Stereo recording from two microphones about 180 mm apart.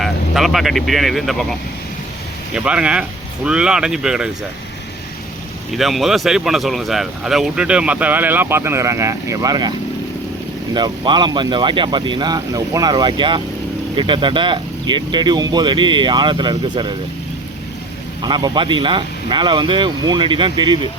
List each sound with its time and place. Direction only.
0.0 s speech: centre (ahead or behind)
2.6 s speech: 5° right (ahead or behind)
5.7 s speech: centre (ahead or behind); by 9.7 s 20° right (ahead or behind)
10.8 s speech: 25° right (ahead or behind)
18.2 s speech: 25° right (ahead or behind)